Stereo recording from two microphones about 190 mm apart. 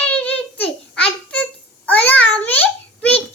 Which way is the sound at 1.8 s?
10° left (ahead or behind).